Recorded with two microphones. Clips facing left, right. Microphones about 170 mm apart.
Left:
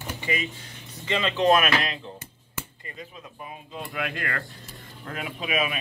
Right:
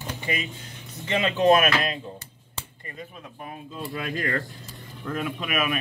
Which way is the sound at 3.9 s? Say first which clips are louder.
Right 1 dB; 65° left (ahead or behind).